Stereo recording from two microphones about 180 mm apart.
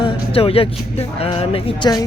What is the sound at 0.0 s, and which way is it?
A man's voice, 30° left (ahead or behind).